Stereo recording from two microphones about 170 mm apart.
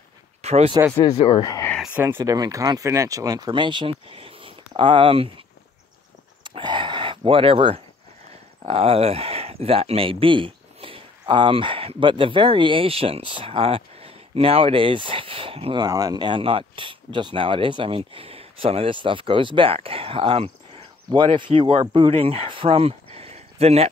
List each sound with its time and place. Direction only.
0.4 s speech: 40° right (ahead or behind)
1.1 s speech: 30° left (ahead or behind)
2.0 s speech: 15° right (ahead or behind); by 5.3 s 35° right (ahead or behind)
6.4 s a sound: 25° right (ahead or behind)
8.6 s speech: 35° right (ahead or behind)